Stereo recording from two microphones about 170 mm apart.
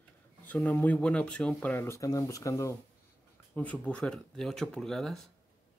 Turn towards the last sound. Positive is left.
turn(degrees=0)  # may be behind; listen again after turning